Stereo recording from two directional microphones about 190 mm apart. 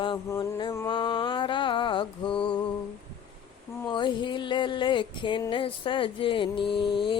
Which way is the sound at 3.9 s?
25° left (ahead or behind).